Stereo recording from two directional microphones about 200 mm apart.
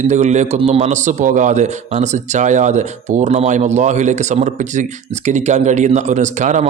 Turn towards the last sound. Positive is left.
turn(degrees=-35)  # may be behind; listen again after turning